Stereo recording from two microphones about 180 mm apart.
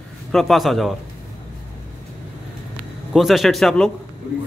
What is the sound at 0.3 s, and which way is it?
Speech, centre (ahead or behind).